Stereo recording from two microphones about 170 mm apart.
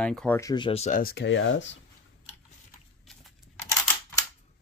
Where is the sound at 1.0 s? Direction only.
80° left.